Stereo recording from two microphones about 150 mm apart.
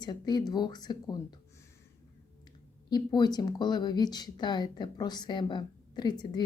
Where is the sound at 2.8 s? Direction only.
30° left (ahead or behind).